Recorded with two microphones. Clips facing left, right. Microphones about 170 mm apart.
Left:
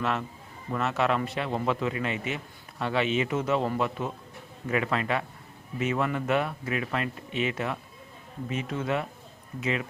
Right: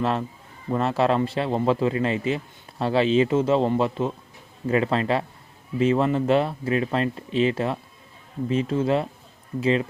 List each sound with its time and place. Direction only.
0.0 s a man's voice: 30° right (ahead or behind)